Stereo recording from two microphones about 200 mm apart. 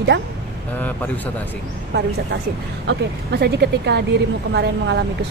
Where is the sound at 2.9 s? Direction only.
55° right (ahead or behind).